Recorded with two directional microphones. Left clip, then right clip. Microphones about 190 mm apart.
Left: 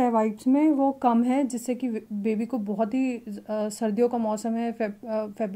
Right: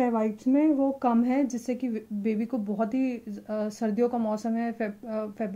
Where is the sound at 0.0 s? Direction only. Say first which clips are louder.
Left 3 dB; 50° left (ahead or behind).